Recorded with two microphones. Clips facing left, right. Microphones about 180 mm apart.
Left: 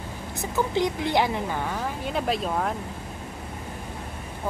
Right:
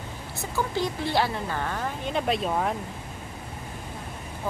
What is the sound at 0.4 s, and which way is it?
A woman's voice, 20° left (ahead or behind).